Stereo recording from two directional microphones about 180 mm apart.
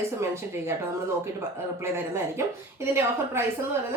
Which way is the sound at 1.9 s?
15° right (ahead or behind).